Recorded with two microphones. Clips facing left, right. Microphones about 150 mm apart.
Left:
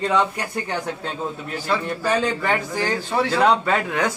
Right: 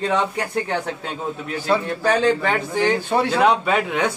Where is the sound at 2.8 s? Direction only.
15° right (ahead or behind).